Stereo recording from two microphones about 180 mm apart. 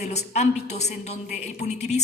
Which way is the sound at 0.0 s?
40° left (ahead or behind).